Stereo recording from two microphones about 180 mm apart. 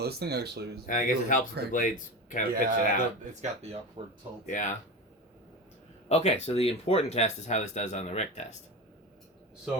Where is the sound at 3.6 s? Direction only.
35° right (ahead or behind).